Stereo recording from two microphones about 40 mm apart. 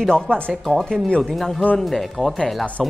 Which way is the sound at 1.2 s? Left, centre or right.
Centre.